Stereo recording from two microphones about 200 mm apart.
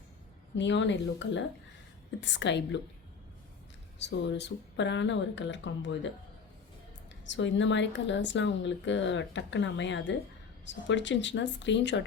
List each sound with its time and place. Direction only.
0.5 s speech: 65° left (ahead or behind)
3.9 s speech: 60° left (ahead or behind)
7.3 s speech: 65° left (ahead or behind)